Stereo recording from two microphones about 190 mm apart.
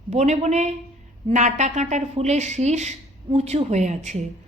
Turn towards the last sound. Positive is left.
turn(degrees=-40)  # may be behind; listen again after turning